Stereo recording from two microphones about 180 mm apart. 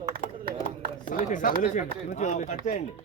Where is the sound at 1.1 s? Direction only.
45° left (ahead or behind).